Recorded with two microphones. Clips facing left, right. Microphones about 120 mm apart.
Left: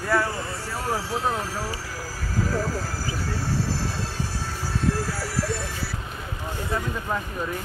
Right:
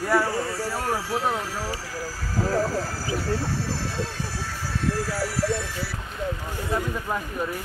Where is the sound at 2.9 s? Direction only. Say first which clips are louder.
Right 3 dB; 40° left (ahead or behind).